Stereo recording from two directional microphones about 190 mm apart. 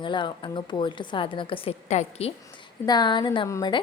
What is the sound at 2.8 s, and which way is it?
Speech, 20° left (ahead or behind).